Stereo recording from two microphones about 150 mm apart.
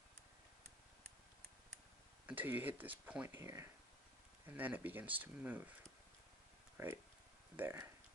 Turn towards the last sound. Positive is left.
turn(degrees=-15)  # may be behind; listen again after turning